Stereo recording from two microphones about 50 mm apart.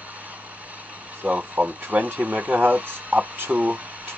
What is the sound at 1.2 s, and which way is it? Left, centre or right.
Speech, right.